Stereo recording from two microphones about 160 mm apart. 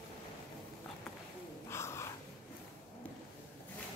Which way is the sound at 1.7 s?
15° left (ahead or behind).